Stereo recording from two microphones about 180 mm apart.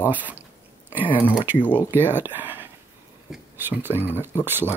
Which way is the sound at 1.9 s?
10° right (ahead or behind).